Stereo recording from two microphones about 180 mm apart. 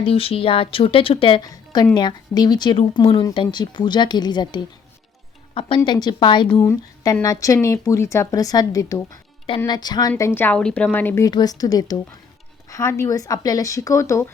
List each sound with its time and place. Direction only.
0.0 s a woman's voice: 30° left (ahead or behind); by 14.3 s 15° left (ahead or behind)